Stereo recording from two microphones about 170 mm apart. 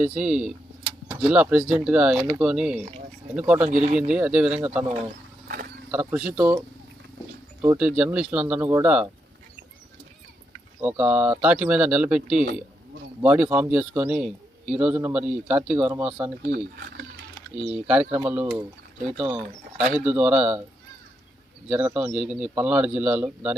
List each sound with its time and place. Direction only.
0.0 s speech: 5° right (ahead or behind)
5.5 s a sound: 65° right (ahead or behind)
5.9 s speech: 10° right (ahead or behind)
7.6 s speech: 10° right (ahead or behind)
10.8 s speech: 10° right (ahead or behind)
16.4 s speech: 65° right (ahead or behind)
18.1 s speech: 10° right (ahead or behind)
21.7 s speech: 5° right (ahead or behind)